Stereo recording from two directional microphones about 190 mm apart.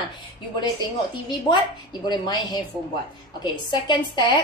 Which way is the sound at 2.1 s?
20° left (ahead or behind).